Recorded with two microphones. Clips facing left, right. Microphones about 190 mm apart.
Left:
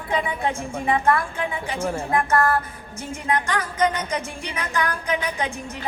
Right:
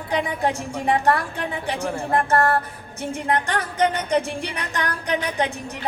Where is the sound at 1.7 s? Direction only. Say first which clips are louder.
Even; 35° right (ahead or behind).